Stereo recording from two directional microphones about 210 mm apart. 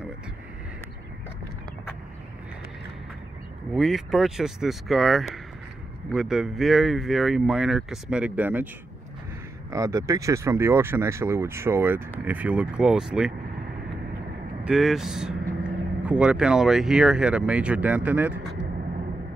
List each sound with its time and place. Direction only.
3.7 s speech: centre (ahead or behind)
9.7 s speech: 15° right (ahead or behind)
14.6 s speech: 5° right (ahead or behind)